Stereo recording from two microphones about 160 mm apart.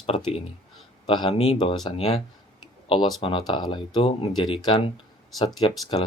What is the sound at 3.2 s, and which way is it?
Speech, 30° left (ahead or behind).